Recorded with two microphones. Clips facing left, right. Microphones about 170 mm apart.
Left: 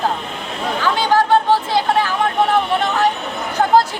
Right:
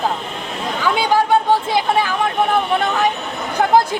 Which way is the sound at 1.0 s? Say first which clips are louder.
Left 1 dB; 10° right (ahead or behind).